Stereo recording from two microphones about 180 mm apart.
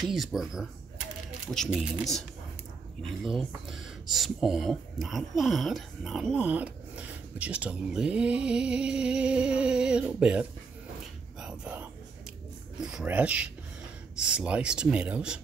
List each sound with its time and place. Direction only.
0.0 s speech: centre (ahead or behind)
3.3 s speech: centre (ahead or behind)
11.3 s whispering: 5° right (ahead or behind)
12.8 s speech: 5° right (ahead or behind)